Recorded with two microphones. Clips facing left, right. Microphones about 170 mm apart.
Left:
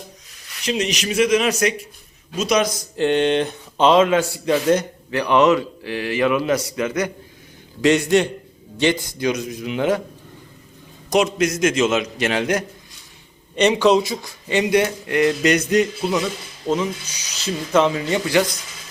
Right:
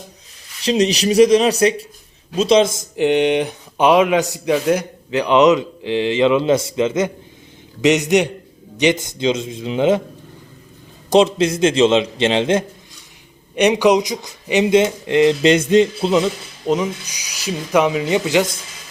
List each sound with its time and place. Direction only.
0.6 s speech: 35° right (ahead or behind)
11.1 s speech: 30° right (ahead or behind)
13.6 s speech: 15° right (ahead or behind)